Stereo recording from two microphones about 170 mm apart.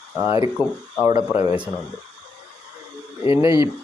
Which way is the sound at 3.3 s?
20° right (ahead or behind).